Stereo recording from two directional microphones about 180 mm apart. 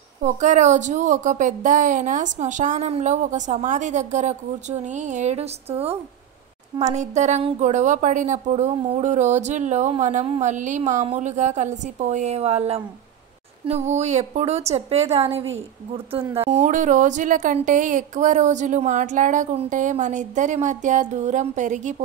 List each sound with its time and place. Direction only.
0.2 s a woman's voice: 40° right (ahead or behind)